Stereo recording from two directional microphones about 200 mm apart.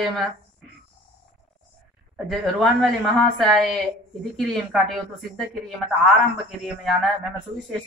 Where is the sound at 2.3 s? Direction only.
Centre (ahead or behind).